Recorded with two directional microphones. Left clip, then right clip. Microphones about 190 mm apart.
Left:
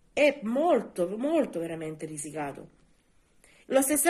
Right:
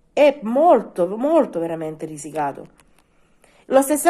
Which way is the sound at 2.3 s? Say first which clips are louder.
Right 13 dB; 10° left (ahead or behind).